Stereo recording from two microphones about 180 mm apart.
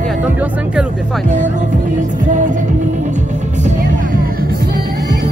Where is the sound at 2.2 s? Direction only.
45° right (ahead or behind).